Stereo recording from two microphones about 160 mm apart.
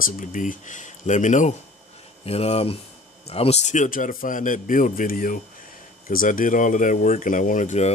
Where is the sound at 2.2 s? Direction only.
40° left (ahead or behind).